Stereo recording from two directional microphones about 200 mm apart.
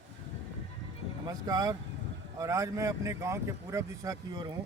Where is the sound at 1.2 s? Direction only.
20° right (ahead or behind).